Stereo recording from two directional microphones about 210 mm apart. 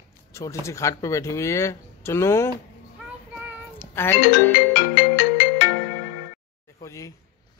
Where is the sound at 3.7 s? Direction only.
10° left (ahead or behind).